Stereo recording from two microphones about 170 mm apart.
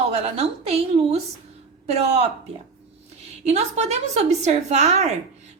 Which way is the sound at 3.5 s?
40° right (ahead or behind).